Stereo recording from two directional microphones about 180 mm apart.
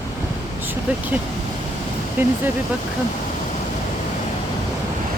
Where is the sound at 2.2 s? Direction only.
10° right (ahead or behind).